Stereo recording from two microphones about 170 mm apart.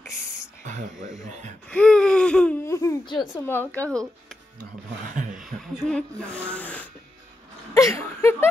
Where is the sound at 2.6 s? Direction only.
15° left (ahead or behind).